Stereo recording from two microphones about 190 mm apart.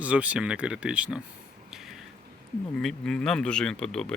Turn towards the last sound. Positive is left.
turn(degrees=5)  # may be behind; listen again after turning